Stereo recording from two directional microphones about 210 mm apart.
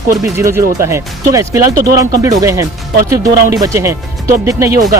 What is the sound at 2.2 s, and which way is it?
Speech, 15° right (ahead or behind).